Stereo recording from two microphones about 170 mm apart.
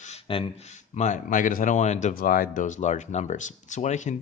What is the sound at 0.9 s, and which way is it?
A man's voice, 45° left (ahead or behind).